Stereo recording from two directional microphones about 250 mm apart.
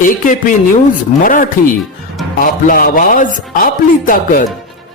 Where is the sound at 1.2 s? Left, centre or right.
Left.